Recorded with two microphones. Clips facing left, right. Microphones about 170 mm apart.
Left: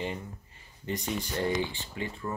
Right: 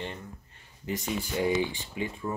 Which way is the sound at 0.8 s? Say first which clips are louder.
Right 1 dB; centre (ahead or behind).